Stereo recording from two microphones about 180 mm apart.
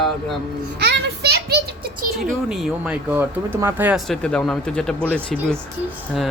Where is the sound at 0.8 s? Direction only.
65° right (ahead or behind).